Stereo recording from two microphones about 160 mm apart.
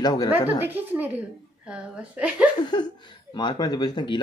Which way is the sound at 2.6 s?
25° left (ahead or behind).